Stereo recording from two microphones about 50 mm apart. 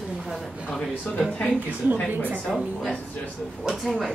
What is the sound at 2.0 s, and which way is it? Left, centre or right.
Speech, right.